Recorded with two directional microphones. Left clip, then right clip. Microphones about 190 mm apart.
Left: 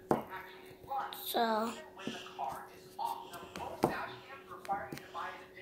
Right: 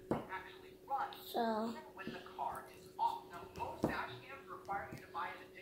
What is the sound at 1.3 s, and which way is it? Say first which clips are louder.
Speech: left 6 dB; 25° left (ahead or behind).